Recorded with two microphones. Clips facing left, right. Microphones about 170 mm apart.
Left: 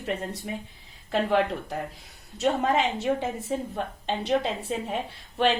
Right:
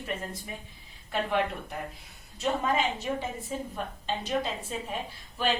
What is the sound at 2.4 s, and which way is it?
A woman's voice, 70° left (ahead or behind).